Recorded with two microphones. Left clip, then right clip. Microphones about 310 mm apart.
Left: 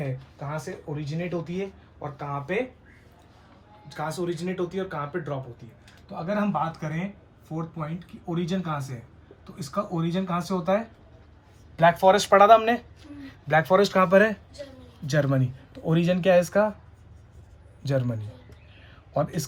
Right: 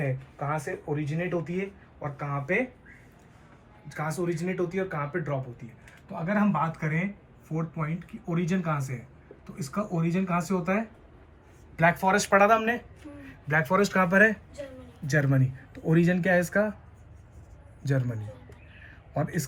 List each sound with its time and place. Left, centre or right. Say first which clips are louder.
0.3 s speech: right 4 dB; centre
3.8 s speech: left 1 dB; centre
11.9 s speech: left 6 dB; left
15.0 s speech: left 2 dB; centre
15.3 s speech: left 2 dB; left
16.4 s speech: left 4 dB; centre
17.8 s speech: left 4 dB; left
19.1 s speech: left 4 dB; centre